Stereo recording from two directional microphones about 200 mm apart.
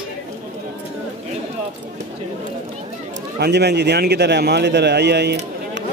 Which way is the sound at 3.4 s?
55° right (ahead or behind).